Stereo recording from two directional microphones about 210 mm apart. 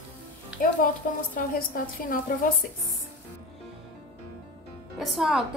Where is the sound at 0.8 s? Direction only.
40° left (ahead or behind).